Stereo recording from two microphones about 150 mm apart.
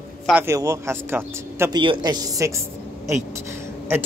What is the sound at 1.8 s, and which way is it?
Speech, 30° right (ahead or behind).